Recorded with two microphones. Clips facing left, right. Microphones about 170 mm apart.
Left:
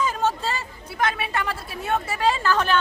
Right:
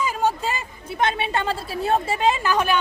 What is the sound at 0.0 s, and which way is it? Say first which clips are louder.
A woman's voice: right 1 dB; 10° right (ahead or behind).